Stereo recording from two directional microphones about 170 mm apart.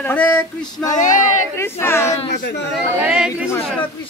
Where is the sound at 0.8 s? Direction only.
50° left (ahead or behind).